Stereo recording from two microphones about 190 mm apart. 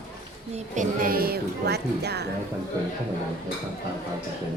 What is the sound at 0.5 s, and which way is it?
Speech, 45° right (ahead or behind).